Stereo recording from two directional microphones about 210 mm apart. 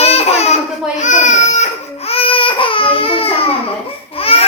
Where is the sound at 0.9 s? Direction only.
35° left (ahead or behind).